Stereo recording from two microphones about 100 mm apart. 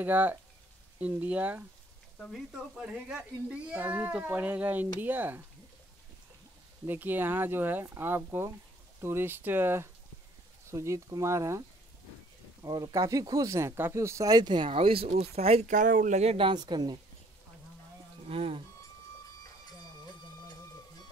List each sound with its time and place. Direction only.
0.0 s speech: 20° right (ahead or behind)
6.9 s speech: 20° right (ahead or behind)
12.6 s speech: 40° right (ahead or behind)
14.7 s speech: 70° right (ahead or behind); by 16.4 s 90° right
16.4 s speech: 45° right (ahead or behind)
18.3 s speech: 70° right (ahead or behind)